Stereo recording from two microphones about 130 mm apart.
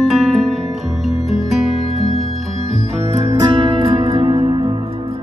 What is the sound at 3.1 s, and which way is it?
Music, 55° right (ahead or behind).